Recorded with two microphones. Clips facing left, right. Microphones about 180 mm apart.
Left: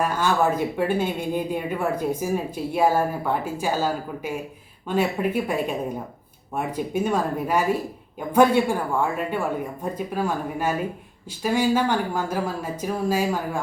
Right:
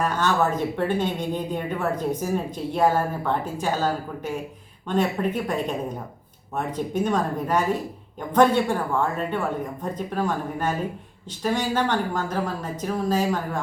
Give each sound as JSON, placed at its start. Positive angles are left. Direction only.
{"t": 0.0, "sound": "speech", "side_deg": 10}